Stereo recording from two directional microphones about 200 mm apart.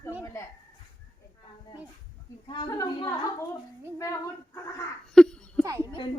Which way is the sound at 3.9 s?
15° left (ahead or behind).